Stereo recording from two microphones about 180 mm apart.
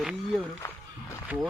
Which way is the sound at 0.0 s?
Centre (ahead or behind).